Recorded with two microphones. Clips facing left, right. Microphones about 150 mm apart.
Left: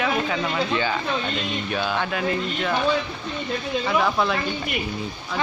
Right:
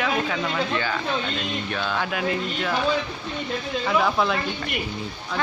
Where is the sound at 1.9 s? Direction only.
5° right (ahead or behind).